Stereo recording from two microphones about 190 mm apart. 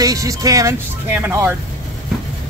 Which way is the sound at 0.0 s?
20° right (ahead or behind).